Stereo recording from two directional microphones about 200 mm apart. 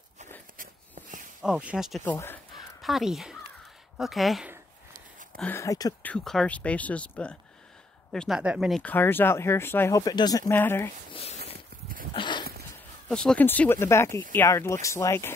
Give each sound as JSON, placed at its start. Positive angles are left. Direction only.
{"t": 0.6, "sound": "a sound", "side_deg": -40}
{"t": 1.4, "sound": "speech", "side_deg": -5}
{"t": 2.0, "sound": "speech", "side_deg": 10}
{"t": 2.5, "sound": "crow", "side_deg": 0}
{"t": 4.0, "sound": "speech", "side_deg": 0}
{"t": 5.4, "sound": "speech", "side_deg": 10}
{"t": 6.1, "sound": "speech", "side_deg": 5}
{"t": 11.1, "sound": "a sound", "side_deg": 30}
{"t": 13.1, "sound": "speech", "side_deg": 5}